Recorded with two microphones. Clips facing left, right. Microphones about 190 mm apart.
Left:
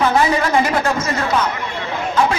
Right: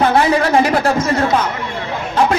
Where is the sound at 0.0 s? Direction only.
35° right (ahead or behind).